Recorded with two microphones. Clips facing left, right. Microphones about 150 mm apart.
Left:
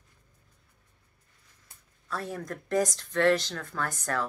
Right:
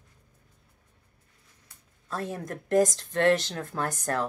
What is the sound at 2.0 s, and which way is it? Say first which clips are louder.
Speech: right 2 dB; 25° right (ahead or behind).